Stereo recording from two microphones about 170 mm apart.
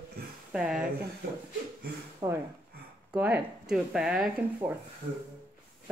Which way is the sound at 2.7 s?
65° right (ahead or behind).